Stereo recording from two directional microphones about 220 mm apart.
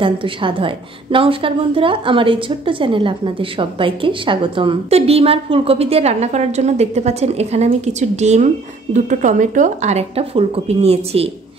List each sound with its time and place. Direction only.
0.0 s a woman's voice: 25° right (ahead or behind)